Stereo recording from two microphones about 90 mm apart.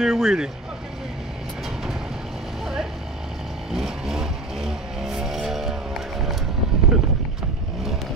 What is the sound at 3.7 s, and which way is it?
Vehicle, 5° right (ahead or behind).